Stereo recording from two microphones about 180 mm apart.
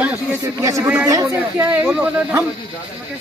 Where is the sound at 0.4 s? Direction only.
15° right (ahead or behind).